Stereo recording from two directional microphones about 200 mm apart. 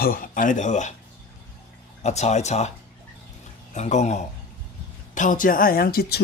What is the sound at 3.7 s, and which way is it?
Speech, 35° left (ahead or behind).